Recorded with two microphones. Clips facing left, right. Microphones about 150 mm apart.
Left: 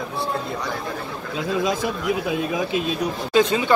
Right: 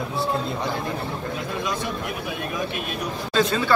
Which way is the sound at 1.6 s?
90° left.